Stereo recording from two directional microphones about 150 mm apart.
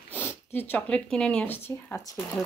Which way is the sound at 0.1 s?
10° left (ahead or behind).